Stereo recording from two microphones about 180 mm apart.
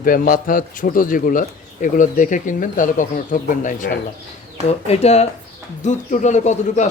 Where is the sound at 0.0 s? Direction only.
50° left (ahead or behind).